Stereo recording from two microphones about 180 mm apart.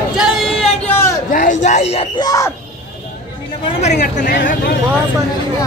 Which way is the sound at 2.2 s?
20° left (ahead or behind).